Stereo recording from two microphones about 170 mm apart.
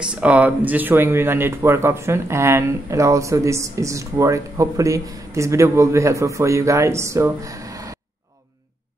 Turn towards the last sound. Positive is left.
turn(degrees=-20)  # may be behind; listen again after turning